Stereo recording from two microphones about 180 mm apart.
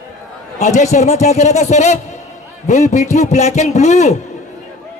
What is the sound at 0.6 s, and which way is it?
Speech, 40° left (ahead or behind).